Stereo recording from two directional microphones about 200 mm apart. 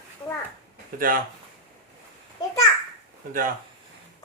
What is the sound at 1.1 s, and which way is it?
Speech, 45° right (ahead or behind).